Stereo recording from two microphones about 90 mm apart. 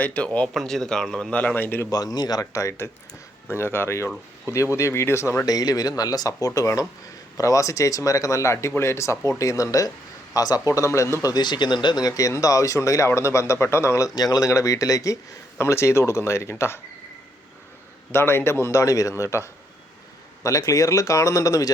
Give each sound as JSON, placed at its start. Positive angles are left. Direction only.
{"t": 0.0, "sound": "a man's voice", "side_deg": 15}
{"t": 0.4, "sound": "a man's voice", "side_deg": 5}
{"t": 1.9, "sound": "a man's voice", "side_deg": 45}
{"t": 5.5, "sound": "speech", "side_deg": 45}
{"t": 8.5, "sound": "speech", "side_deg": 25}
{"t": 11.3, "sound": "speech", "side_deg": 55}
{"t": 14.2, "sound": "speech", "side_deg": 45}
{"t": 18.1, "sound": "a man's voice", "side_deg": 25}